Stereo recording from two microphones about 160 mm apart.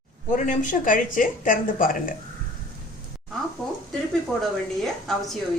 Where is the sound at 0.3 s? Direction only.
50° left (ahead or behind).